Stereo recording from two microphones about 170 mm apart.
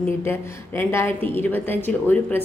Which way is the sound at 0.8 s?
15° left (ahead or behind).